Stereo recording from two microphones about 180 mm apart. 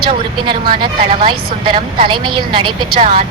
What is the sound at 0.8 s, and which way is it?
A woman's voice, 25° right (ahead or behind).